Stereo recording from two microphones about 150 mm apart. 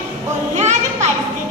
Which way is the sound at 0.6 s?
50° right (ahead or behind).